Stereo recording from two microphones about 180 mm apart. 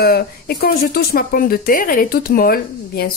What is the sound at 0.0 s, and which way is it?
Speech, 60° left (ahead or behind).